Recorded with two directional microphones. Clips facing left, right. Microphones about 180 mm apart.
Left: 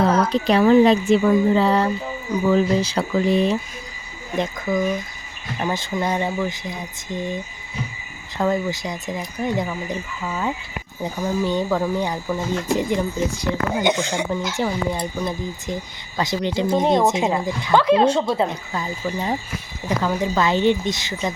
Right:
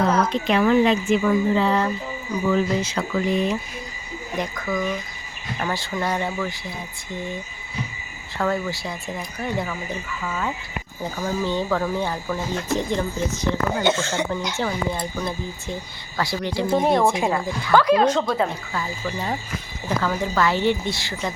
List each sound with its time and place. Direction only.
0.3 s a woman's voice: 35° left (ahead or behind); by 7.3 s 20° left (ahead or behind)
8.4 s a woman's voice: 20° left (ahead or behind)